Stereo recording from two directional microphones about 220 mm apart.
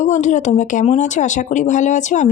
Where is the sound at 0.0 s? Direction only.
35° left (ahead or behind).